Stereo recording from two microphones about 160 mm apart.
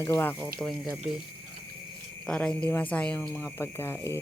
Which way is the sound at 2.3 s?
5° left (ahead or behind).